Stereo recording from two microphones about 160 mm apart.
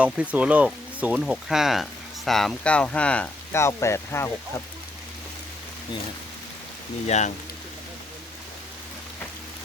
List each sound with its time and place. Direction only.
0.0 s speech: 10° right (ahead or behind); by 4.6 s 15° left (ahead or behind)
7.1 s speech: 45° left (ahead or behind)